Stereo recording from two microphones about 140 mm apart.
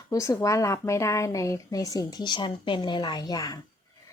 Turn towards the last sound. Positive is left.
turn(degrees=25)  # may be behind; listen again after turning